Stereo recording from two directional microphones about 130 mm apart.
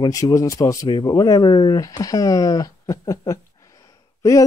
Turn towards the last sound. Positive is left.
turn(degrees=25)  # may be behind; listen again after turning